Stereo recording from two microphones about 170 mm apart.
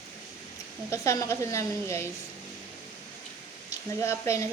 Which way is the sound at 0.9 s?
15° left (ahead or behind).